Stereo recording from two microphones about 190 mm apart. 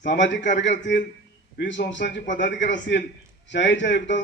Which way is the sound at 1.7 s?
70° left (ahead or behind).